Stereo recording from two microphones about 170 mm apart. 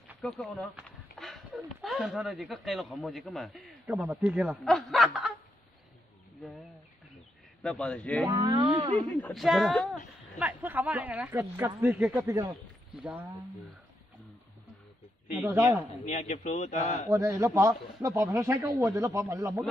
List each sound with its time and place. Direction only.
0.2 s speech: centre (ahead or behind)
7.6 s a man's voice: 5° left (ahead or behind)
8.3 s speech: 25° right (ahead or behind)
9.1 s speech: 5° left (ahead or behind)
10.4 s speech: 10° right (ahead or behind)
15.4 s speech: 15° right (ahead or behind)
16.1 s a man's voice: 45° left (ahead or behind)
17.1 s speech: 20° right (ahead or behind)